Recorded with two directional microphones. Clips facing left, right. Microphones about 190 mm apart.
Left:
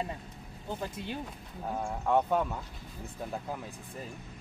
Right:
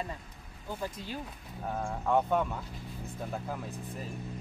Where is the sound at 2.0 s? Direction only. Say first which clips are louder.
Even; 5° left (ahead or behind).